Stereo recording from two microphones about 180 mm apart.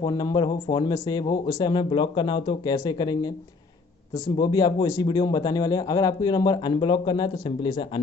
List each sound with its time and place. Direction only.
0.0 s a man's voice: 20° left (ahead or behind)
4.4 s a man's voice: 20° left (ahead or behind)